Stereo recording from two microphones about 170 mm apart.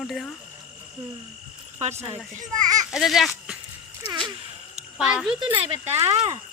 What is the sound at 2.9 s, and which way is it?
Speech, centre (ahead or behind).